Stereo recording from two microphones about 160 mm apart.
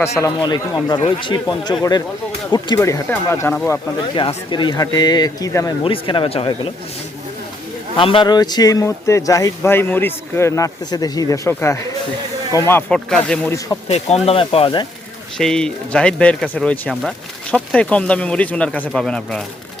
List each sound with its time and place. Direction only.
0.0 s speech: 20° left (ahead or behind)
3.9 s speech: 30° left (ahead or behind)
7.9 s speech: 35° left (ahead or behind); by 13.5 s 5° left (ahead or behind)
13.8 s speech: 40° left (ahead or behind)
15.4 s speech: 5° left (ahead or behind)